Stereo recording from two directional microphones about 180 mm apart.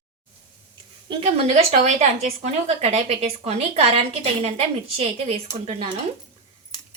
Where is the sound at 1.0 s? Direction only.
35° right (ahead or behind).